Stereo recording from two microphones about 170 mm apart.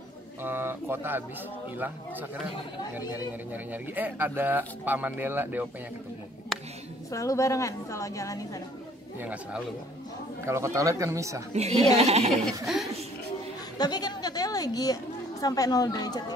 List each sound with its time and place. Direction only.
0.4 s speech: 10° right (ahead or behind)
3.5 s speech: 10° right (ahead or behind)
7.1 s a woman's voice: 20° left (ahead or behind)
9.2 s speech: 10° right (ahead or behind)
11.5 s speech: 40° right (ahead or behind)
12.6 s speech: centre (ahead or behind)
13.7 s a sound: 25° left (ahead or behind)
15.4 s a woman's voice: 20° left (ahead or behind)